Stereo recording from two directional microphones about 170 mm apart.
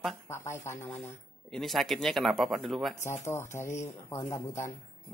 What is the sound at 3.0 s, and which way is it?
Speech, 15° left (ahead or behind).